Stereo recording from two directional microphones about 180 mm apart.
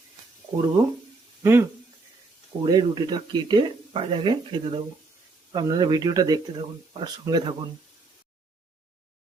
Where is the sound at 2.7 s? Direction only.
25° right (ahead or behind).